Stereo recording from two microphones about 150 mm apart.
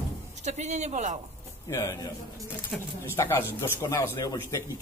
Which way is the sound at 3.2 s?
15° left (ahead or behind).